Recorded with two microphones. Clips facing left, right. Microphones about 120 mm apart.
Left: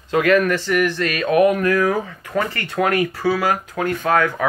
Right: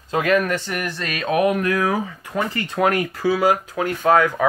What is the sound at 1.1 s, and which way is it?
Speech, 25° right (ahead or behind).